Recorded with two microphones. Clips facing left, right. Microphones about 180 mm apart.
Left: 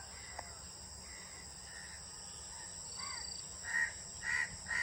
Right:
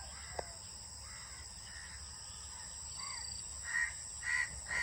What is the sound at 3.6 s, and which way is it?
Bird, 40° left (ahead or behind).